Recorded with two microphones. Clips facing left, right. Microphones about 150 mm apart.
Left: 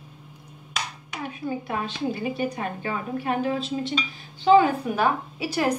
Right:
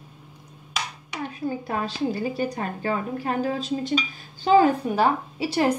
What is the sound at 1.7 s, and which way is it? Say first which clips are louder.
A woman's voice: right 3 dB; 40° right (ahead or behind).